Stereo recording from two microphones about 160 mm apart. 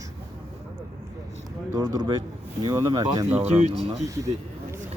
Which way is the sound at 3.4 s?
40° right (ahead or behind).